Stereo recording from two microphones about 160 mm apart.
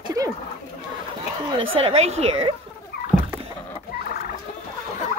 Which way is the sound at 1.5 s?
35° right (ahead or behind).